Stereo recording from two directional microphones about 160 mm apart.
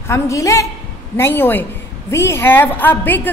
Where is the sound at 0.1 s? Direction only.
20° left (ahead or behind).